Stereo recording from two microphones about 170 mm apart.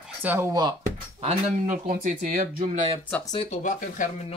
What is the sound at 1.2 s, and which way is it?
Speech, 50° right (ahead or behind).